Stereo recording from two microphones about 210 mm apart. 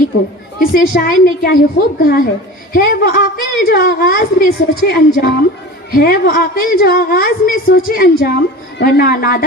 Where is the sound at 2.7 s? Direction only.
45° left (ahead or behind).